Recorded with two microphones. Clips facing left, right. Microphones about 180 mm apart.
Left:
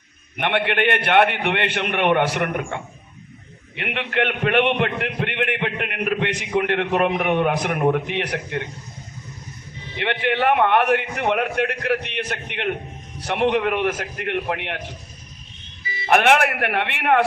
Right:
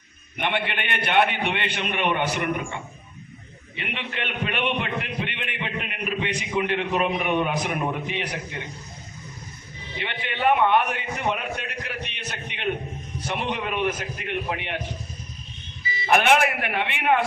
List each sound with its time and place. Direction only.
0.3 s a man's voice: 65° left (ahead or behind)
3.8 s a man's voice: 65° left (ahead or behind)
10.0 s a man's voice: 70° left (ahead or behind)
16.0 s a man's voice: 70° left (ahead or behind)